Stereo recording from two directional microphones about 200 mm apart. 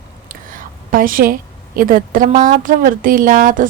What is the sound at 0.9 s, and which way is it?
A woman's voice, 45° right (ahead or behind).